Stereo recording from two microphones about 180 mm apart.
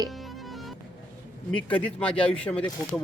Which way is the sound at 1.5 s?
10° left (ahead or behind).